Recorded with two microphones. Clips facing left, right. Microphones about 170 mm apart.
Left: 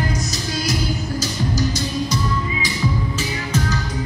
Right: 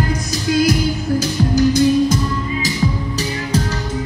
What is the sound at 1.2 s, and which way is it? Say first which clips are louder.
Music: right 8 dB; 55° right (ahead or behind).